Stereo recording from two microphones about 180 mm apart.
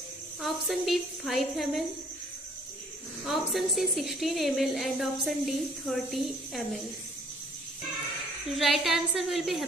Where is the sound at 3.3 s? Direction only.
Centre (ahead or behind).